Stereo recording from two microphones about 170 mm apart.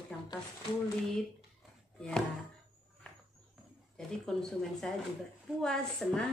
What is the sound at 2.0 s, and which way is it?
Music, 5° left (ahead or behind).